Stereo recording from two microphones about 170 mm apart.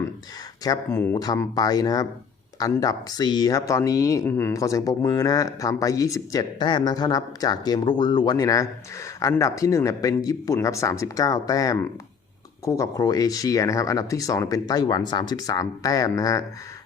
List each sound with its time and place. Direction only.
0.6 s speech: 20° left (ahead or behind)